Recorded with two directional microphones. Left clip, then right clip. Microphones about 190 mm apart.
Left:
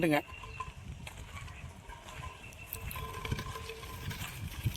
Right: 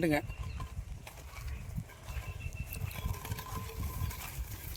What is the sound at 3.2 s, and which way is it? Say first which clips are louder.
Water: left 5 dB; 55° right (ahead or behind).